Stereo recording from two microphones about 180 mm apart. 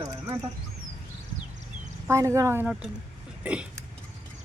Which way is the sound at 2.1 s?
15° right (ahead or behind).